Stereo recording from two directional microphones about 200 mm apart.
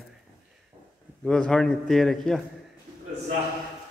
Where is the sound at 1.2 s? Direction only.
5° left (ahead or behind).